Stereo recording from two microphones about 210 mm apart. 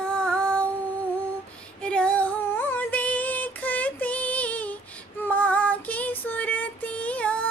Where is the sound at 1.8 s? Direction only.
5° left (ahead or behind).